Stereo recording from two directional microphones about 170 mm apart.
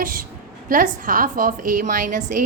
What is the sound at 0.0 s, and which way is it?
A woman's voice, 55° right (ahead or behind).